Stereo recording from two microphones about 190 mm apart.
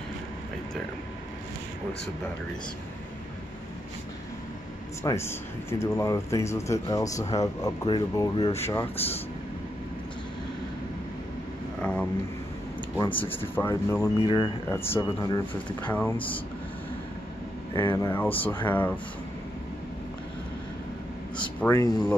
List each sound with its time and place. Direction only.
5.0 s speech: 15° left (ahead or behind); by 8.6 s 30° left (ahead or behind)
11.8 s a sound: 5° left (ahead or behind)
12.9 s speech: 10° left (ahead or behind)
15.9 s speech: 10° left (ahead or behind)
17.7 s speech: 15° left (ahead or behind)
21.4 s speech: 10° left (ahead or behind)